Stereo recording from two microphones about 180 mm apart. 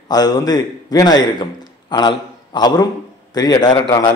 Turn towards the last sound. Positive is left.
turn(degrees=20)  # may be behind; listen again after turning